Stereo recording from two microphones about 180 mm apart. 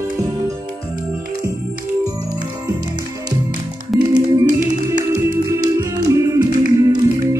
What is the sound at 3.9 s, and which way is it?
Music, centre (ahead or behind).